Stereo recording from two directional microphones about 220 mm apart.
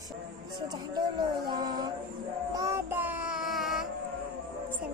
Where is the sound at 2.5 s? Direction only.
15° right (ahead or behind).